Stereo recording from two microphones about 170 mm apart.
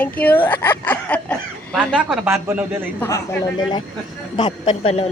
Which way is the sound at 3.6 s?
25° left (ahead or behind).